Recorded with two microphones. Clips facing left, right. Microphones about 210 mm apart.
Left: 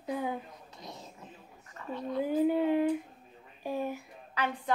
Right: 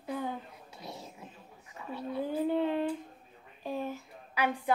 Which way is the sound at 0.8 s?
10° right (ahead or behind).